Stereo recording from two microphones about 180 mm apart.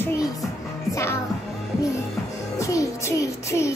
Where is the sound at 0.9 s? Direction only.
15° left (ahead or behind).